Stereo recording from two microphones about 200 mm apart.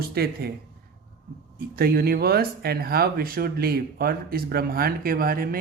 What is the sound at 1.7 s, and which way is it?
Speech, 50° right (ahead or behind).